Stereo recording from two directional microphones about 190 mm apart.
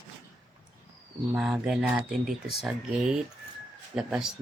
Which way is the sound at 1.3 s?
5° right (ahead or behind).